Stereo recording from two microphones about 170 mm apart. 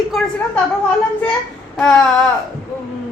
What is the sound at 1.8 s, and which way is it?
Speech, 5° left (ahead or behind).